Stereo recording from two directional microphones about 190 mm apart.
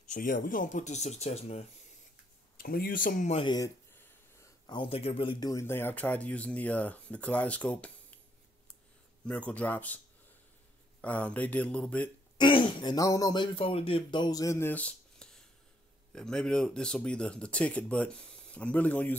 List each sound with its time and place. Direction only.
0.1 s speech: 45° left (ahead or behind)
2.5 s speech: 50° left (ahead or behind); by 7.9 s 5° left (ahead or behind)
9.2 s speech: 5° left (ahead or behind)
11.0 s speech: 5° left (ahead or behind)
12.4 s speech: 25° left (ahead or behind); by 19.1 s 10° left (ahead or behind)